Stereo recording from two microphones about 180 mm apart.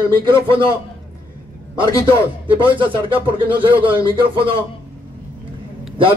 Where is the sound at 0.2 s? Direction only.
25° right (ahead or behind).